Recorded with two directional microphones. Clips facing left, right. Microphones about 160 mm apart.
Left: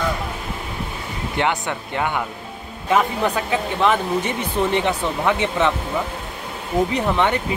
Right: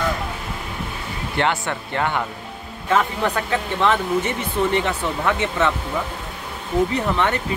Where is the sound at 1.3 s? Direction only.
15° left (ahead or behind).